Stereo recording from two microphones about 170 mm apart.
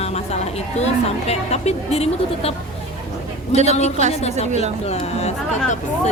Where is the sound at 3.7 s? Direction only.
40° left (ahead or behind).